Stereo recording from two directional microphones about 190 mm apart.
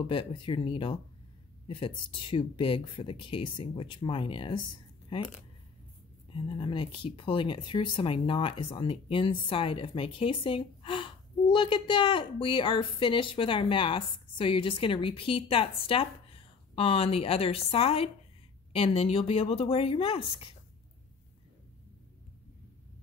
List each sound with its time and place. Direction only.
0.0 s speech: 25° left (ahead or behind)
6.3 s speech: 25° left (ahead or behind)